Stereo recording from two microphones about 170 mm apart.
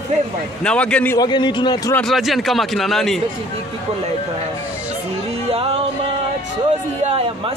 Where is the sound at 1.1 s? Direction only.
25° left (ahead or behind).